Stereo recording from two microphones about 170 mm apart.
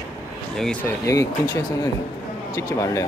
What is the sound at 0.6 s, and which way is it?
Speech, 5° left (ahead or behind).